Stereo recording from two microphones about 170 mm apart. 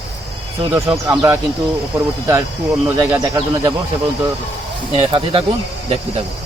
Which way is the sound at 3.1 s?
20° right (ahead or behind).